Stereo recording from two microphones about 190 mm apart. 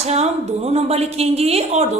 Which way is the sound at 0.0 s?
35° right (ahead or behind).